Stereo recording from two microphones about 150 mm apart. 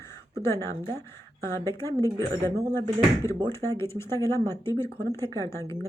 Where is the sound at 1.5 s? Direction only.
20° left (ahead or behind).